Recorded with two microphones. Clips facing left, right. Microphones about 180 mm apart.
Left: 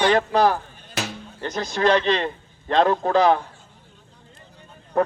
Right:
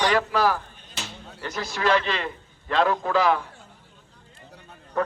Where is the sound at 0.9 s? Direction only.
70° left (ahead or behind).